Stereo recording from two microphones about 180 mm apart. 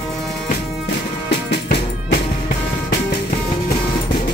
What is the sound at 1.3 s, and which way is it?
Music, 70° left (ahead or behind).